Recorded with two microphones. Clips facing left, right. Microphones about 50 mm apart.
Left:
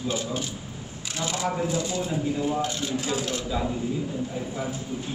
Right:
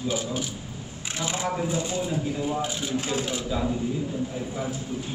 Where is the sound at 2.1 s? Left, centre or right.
Centre.